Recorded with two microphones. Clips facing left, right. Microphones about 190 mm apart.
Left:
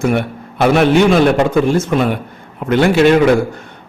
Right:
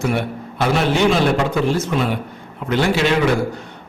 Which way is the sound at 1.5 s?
50° left (ahead or behind).